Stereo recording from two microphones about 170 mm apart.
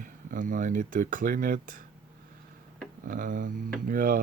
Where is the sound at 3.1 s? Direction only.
50° right (ahead or behind).